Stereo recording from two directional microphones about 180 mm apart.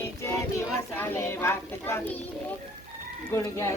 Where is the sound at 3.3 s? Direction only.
15° left (ahead or behind).